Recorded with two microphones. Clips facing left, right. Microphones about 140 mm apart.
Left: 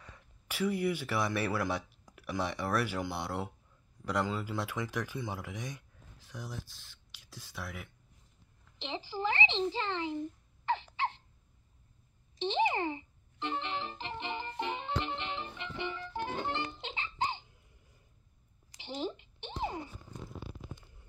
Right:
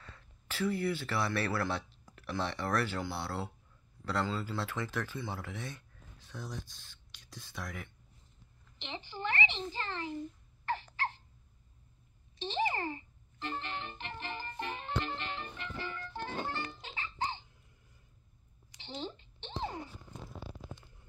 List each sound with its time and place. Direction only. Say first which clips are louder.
0.0 s speech: even; 15° left (ahead or behind)
8.7 s a child's voice: left 5 dB; 25° left (ahead or behind)
12.4 s a child's voice: left 4 dB; 20° left (ahead or behind)
15.0 s music: left 2 dB; 20° left (ahead or behind)
18.8 s a sound: left 4 dB; 10° left (ahead or behind)